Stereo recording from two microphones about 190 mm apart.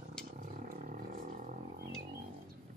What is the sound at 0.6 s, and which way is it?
Roaring cats, 50° right (ahead or behind).